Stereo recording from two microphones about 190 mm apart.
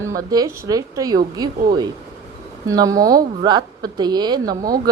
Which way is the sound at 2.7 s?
20° right (ahead or behind).